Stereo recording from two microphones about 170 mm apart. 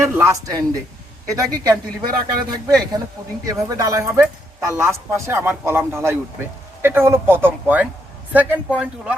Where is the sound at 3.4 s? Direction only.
20° right (ahead or behind).